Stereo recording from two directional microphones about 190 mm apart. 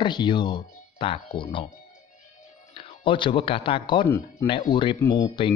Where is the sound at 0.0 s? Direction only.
25° left (ahead or behind).